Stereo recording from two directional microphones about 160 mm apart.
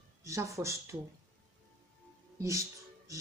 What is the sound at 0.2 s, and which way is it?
Speech, 20° right (ahead or behind).